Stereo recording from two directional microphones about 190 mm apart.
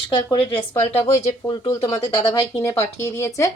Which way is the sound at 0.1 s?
25° left (ahead or behind).